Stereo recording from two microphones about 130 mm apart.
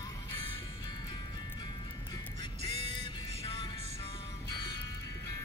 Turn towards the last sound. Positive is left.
turn(degrees=40)  # may be behind; listen again after turning